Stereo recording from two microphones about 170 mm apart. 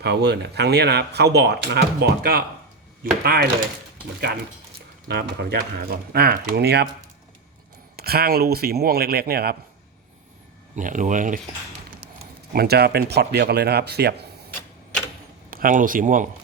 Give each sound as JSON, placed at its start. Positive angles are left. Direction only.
{"t": 0.0, "sound": "speech", "side_deg": -75}
{"t": 5.0, "sound": "speech", "side_deg": -75}
{"t": 7.9, "sound": "speech", "side_deg": -65}
{"t": 10.8, "sound": "speech", "side_deg": -50}
{"t": 12.5, "sound": "speech", "side_deg": -70}
{"t": 15.4, "sound": "speech", "side_deg": -55}